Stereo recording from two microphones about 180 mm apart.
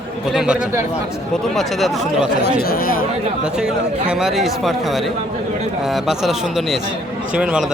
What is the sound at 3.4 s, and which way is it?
Speech, 5° right (ahead or behind).